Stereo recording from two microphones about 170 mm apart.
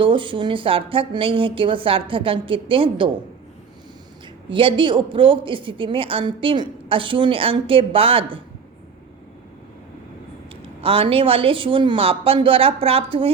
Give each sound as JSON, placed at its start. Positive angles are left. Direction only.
{"t": 0.0, "sound": "a woman's voice", "side_deg": -30}
{"t": 4.5, "sound": "a woman's voice", "side_deg": -30}
{"t": 10.5, "sound": "a woman's voice", "side_deg": -35}